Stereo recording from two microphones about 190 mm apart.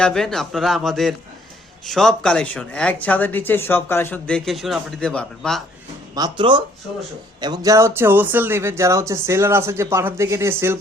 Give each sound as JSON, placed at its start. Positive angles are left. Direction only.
{"t": 0.0, "sound": "speech", "side_deg": 5}
{"t": 6.1, "sound": "speech", "side_deg": -25}